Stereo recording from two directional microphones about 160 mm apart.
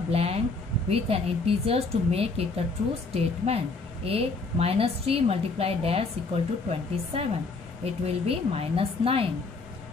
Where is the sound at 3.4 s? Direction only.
35° right (ahead or behind).